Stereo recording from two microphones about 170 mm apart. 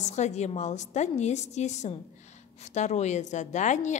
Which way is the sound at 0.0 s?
45° left (ahead or behind).